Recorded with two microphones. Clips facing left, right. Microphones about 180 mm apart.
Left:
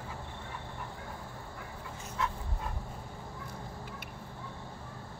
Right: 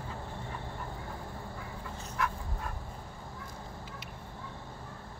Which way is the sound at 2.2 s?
25° left (ahead or behind).